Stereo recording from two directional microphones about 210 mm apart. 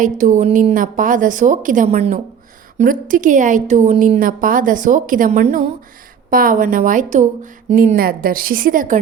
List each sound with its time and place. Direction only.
0.0 s a woman's voice: 35° right (ahead or behind)